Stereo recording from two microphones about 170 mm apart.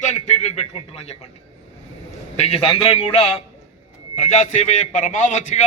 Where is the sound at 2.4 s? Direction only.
35° left (ahead or behind).